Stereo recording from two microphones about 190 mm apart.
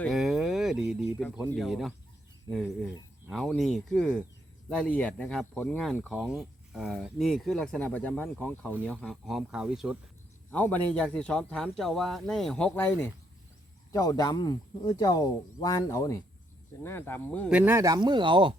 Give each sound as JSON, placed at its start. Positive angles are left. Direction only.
{"t": 0.0, "sound": "a sound", "side_deg": 0}
{"t": 1.5, "sound": "speech", "side_deg": 0}
{"t": 10.5, "sound": "speech", "side_deg": 10}
{"t": 17.5, "sound": "speech", "side_deg": -10}